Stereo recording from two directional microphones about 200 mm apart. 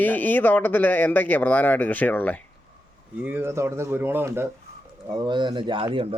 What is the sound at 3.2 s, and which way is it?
Speech, 10° right (ahead or behind).